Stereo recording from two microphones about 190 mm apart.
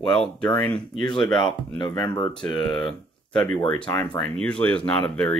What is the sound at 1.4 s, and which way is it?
Speech, 25° left (ahead or behind).